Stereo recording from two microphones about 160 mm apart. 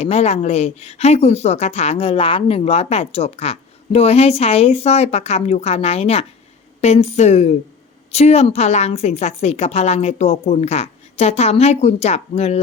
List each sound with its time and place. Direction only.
0.0 s a woman's voice: 40° left (ahead or behind)